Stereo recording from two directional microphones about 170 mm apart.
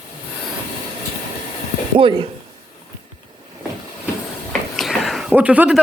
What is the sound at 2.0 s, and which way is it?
Speech, 30° right (ahead or behind).